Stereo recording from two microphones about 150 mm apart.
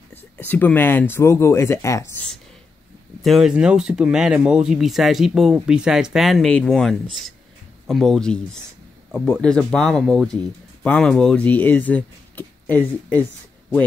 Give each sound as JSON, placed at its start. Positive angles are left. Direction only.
{"t": 0.1, "sound": "speech", "side_deg": 15}
{"t": 3.2, "sound": "speech", "side_deg": 0}